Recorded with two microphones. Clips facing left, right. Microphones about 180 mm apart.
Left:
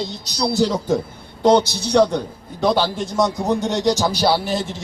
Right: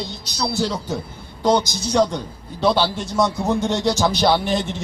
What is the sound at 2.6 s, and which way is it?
Speech, 45° left (ahead or behind).